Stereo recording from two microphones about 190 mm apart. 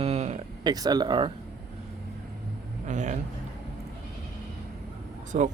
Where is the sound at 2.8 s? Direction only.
40° right (ahead or behind).